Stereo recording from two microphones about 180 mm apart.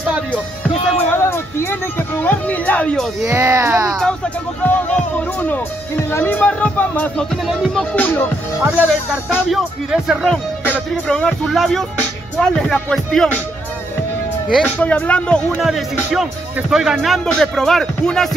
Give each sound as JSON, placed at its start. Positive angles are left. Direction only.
{"t": 0.9, "sound": "speech", "side_deg": 10}
{"t": 3.3, "sound": "speech", "side_deg": -15}
{"t": 4.0, "sound": "speech", "side_deg": 5}
{"t": 9.5, "sound": "speech", "side_deg": 0}
{"t": 14.5, "sound": "speech", "side_deg": 5}